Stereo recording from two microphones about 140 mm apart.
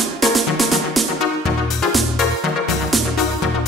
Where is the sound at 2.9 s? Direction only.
Centre (ahead or behind).